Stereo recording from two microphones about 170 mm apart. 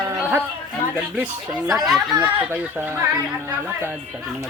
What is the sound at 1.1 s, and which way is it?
Speech, 5° right (ahead or behind).